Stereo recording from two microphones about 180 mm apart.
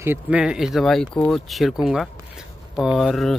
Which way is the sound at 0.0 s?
10° right (ahead or behind).